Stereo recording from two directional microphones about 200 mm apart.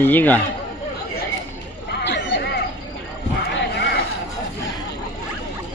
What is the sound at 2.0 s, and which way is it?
Chatter, 60° left (ahead or behind).